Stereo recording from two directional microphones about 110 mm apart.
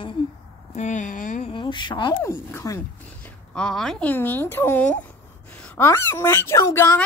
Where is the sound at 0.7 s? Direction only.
90° left.